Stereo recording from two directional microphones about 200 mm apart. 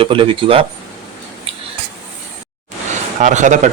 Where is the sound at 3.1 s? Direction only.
35° right (ahead or behind).